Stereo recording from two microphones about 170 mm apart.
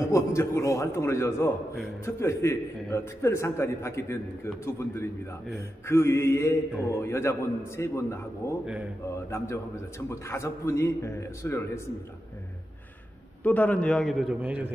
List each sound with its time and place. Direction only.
0.1 s a man's voice: 15° left (ahead or behind)
13.4 s a man's voice: 10° left (ahead or behind); by 14.7 s 10° right (ahead or behind)